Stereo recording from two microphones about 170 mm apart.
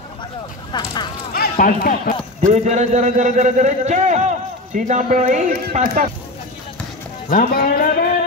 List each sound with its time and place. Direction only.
0.7 s speech: 25° left (ahead or behind)
1.3 s speech: 60° left (ahead or behind)
2.5 s a man's voice: 45° right (ahead or behind)
7.2 s speech: 55° left (ahead or behind)